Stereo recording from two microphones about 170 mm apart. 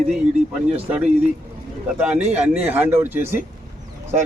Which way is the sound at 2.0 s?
5° right (ahead or behind).